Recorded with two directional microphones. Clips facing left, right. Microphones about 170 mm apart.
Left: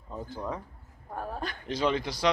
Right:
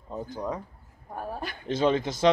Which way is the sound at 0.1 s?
15° right (ahead or behind).